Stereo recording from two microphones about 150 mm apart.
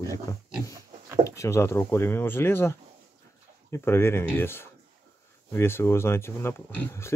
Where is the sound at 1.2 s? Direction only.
20° left (ahead or behind).